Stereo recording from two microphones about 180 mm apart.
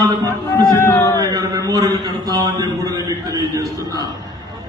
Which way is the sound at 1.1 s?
20° right (ahead or behind).